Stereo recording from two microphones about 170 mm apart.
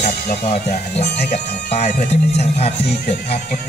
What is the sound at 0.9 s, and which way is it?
Speech, 75° left (ahead or behind).